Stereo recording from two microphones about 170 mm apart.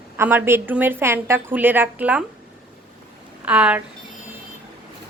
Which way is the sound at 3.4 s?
5° right (ahead or behind).